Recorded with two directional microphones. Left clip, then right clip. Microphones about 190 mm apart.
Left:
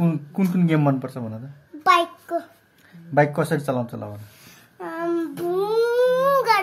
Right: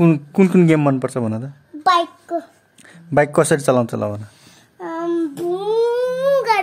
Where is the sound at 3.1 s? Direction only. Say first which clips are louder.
Right 5 dB; 65° right (ahead or behind).